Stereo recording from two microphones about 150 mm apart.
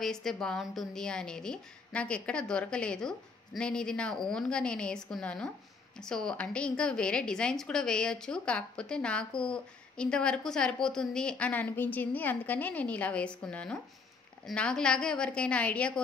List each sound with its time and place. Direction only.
0.0 s a woman's voice: centre (ahead or behind)